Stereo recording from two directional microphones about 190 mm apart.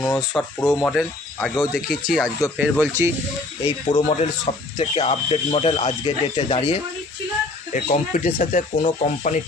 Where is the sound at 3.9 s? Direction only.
40° left (ahead or behind).